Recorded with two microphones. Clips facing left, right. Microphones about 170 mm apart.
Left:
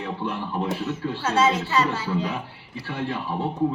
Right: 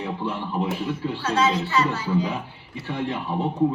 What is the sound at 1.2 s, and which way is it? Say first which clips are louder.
Speech: left 1 dB; 25° left (ahead or behind).